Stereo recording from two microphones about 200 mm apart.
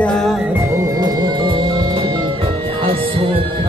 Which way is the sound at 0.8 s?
20° right (ahead or behind).